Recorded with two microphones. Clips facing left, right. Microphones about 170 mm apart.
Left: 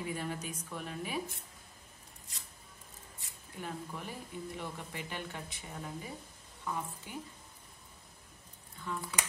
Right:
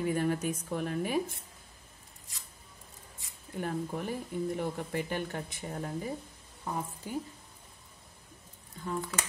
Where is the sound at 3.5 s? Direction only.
50° right (ahead or behind).